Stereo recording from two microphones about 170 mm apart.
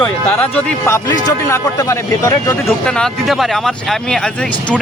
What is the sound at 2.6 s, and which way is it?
Speech, 5° left (ahead or behind).